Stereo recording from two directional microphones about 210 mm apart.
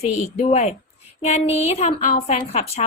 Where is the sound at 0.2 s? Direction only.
30° left (ahead or behind).